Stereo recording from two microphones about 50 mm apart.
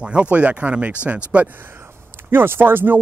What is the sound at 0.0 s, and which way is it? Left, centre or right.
Speech, right.